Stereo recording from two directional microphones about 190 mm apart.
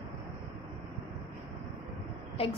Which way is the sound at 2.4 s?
30° left (ahead or behind).